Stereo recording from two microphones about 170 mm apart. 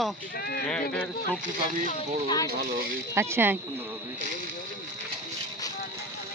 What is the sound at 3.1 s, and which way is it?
Speech, 15° right (ahead or behind).